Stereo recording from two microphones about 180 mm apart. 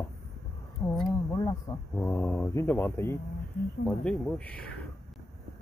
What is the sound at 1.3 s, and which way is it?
Speech, 20° left (ahead or behind).